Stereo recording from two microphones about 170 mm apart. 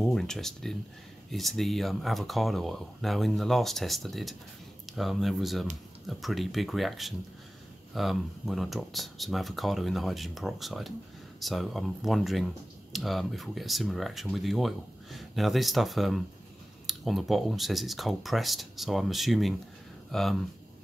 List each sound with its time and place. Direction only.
0.0 s speech: 5° left (ahead or behind)